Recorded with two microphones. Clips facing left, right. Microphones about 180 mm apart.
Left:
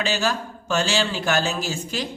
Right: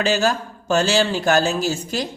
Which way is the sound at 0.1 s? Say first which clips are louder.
Right 4 dB; 40° right (ahead or behind).